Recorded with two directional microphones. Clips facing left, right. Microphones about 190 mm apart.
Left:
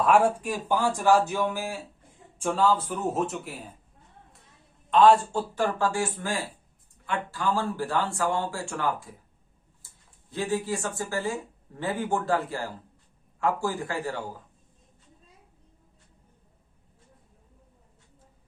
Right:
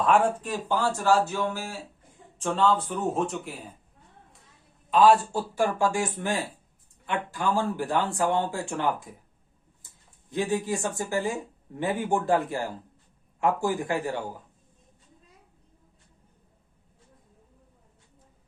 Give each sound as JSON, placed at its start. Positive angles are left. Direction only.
{"t": 0.0, "sound": "speech", "side_deg": 10}
{"t": 4.9, "sound": "speech", "side_deg": -5}
{"t": 10.2, "sound": "speech", "side_deg": -15}